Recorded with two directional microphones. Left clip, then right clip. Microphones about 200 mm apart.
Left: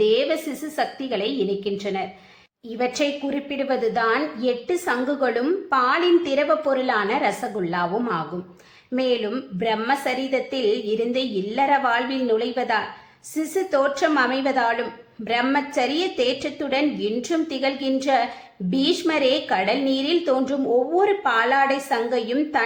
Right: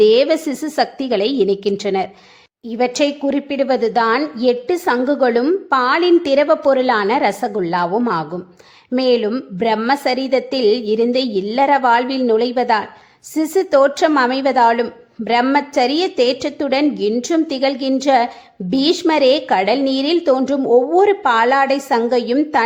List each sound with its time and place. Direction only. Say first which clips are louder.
0.0 s a woman's voice: right 8 dB; 45° right (ahead or behind)